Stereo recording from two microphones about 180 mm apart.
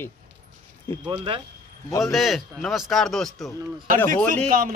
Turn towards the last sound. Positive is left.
turn(degrees=-50)  # may be behind; listen again after turning